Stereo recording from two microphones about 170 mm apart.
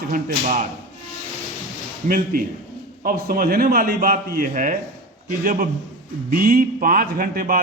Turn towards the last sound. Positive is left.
turn(degrees=-60)  # may be behind; listen again after turning